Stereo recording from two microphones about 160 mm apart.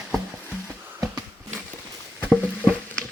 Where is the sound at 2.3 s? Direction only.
5° left (ahead or behind).